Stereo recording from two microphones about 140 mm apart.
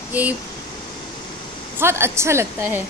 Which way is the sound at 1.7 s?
15° right (ahead or behind).